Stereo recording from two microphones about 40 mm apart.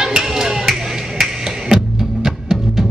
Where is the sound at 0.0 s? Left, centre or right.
Centre.